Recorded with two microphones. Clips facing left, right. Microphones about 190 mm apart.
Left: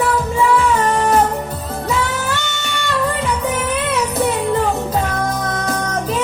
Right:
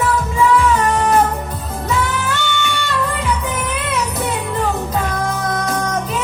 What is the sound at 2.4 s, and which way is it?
Music, 40° left (ahead or behind).